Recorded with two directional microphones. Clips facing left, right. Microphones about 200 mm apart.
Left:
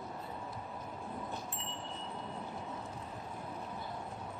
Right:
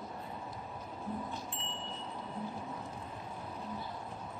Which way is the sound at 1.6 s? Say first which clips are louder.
Even; 25° right (ahead or behind).